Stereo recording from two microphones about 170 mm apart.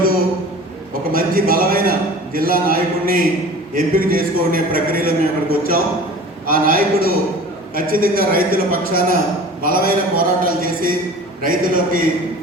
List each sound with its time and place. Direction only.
1.1 s a man's voice: 60° right (ahead or behind)